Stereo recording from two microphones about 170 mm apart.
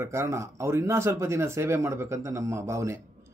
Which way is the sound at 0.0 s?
15° right (ahead or behind).